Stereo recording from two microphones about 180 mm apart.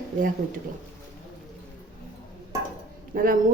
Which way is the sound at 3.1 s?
50° right (ahead or behind).